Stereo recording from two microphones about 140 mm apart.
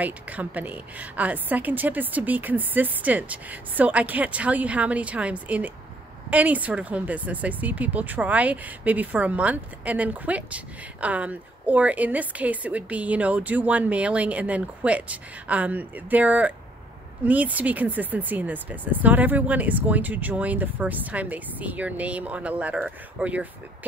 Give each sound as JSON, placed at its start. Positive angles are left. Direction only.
{"t": 0.0, "sound": "speech", "side_deg": -10}